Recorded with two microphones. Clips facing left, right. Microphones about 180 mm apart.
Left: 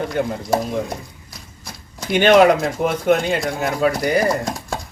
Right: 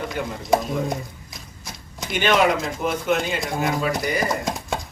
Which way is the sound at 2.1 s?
50° left (ahead or behind).